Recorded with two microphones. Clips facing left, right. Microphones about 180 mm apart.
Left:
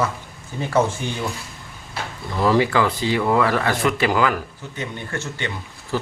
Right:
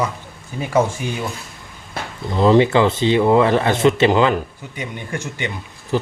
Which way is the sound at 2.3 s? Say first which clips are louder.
Right 5 dB; 20° right (ahead or behind).